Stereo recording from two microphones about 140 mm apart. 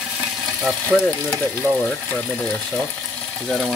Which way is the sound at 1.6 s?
20° right (ahead or behind).